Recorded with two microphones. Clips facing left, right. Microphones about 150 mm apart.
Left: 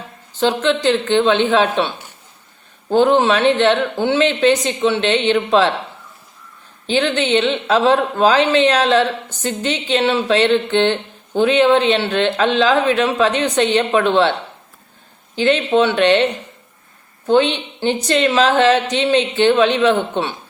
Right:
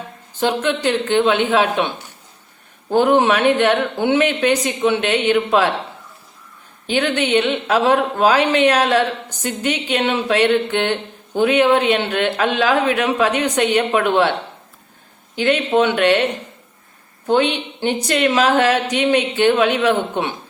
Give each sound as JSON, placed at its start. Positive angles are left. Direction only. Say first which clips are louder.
{"t": 0.3, "sound": "a woman's voice", "louder": "left 2 dB", "side_deg": -10}
{"t": 6.8, "sound": "a woman's voice", "louder": "left 1 dB", "side_deg": -10}
{"t": 15.4, "sound": "a woman's voice", "louder": "left 1 dB", "side_deg": -10}